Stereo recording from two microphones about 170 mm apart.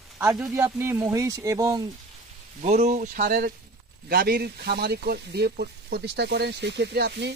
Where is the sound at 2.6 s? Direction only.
40° right (ahead or behind).